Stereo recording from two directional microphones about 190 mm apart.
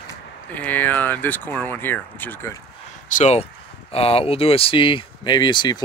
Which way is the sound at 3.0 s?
40° left (ahead or behind).